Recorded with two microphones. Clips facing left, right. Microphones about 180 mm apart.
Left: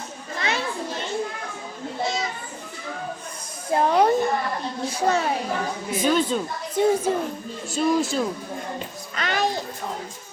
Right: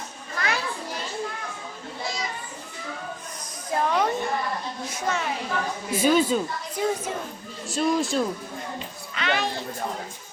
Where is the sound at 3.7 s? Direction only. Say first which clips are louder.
Left 5 dB; 35° left (ahead or behind).